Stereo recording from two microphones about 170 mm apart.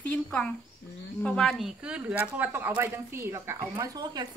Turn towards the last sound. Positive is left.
turn(degrees=-25)  # may be behind; listen again after turning